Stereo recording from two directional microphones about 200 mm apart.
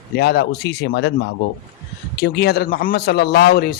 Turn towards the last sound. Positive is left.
turn(degrees=50)  # may be behind; listen again after turning